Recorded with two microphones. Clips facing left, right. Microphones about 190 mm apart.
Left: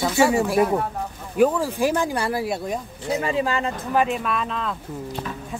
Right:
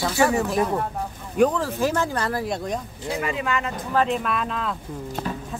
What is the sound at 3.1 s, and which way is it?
Speech, 30° left (ahead or behind).